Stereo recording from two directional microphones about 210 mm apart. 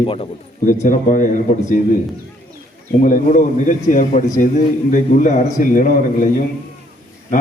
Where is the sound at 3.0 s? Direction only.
40° left (ahead or behind).